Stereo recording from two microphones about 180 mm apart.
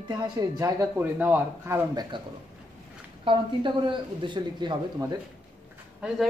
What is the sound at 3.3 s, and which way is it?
Speech, 25° right (ahead or behind).